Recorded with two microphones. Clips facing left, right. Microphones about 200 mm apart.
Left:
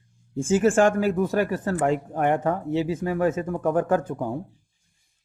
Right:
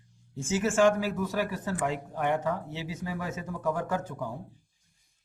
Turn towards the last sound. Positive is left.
turn(degrees=55)  # may be behind; listen again after turning